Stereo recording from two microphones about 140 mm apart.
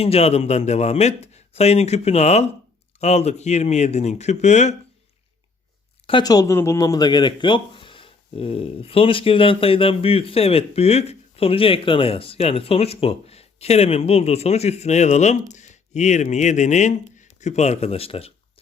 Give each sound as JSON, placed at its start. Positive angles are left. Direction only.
{"t": 0.0, "sound": "speech", "side_deg": 45}
{"t": 6.1, "sound": "speech", "side_deg": 30}